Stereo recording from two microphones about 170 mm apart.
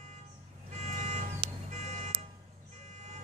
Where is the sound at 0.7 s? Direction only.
40° right (ahead or behind).